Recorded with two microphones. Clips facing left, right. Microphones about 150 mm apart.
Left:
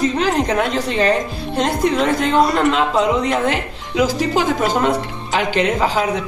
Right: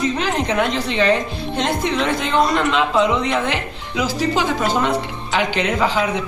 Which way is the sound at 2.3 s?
10° left (ahead or behind).